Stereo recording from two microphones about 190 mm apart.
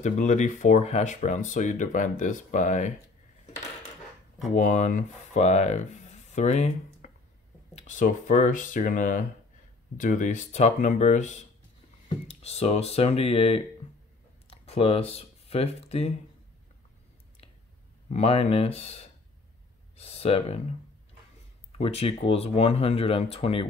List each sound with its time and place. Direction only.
0.0 s speech: 40° left (ahead or behind)
4.5 s speech: 40° left (ahead or behind)
18.1 s speech: 35° left (ahead or behind)
21.7 s speech: 30° left (ahead or behind)